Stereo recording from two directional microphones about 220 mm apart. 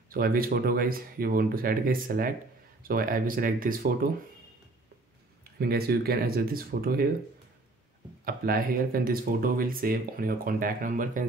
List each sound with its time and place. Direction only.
0.1 s speech: 40° right (ahead or behind)
5.4 s speech: 45° right (ahead or behind)
8.3 s speech: 40° right (ahead or behind)